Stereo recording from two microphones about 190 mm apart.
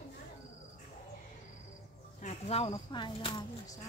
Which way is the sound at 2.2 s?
35° left (ahead or behind).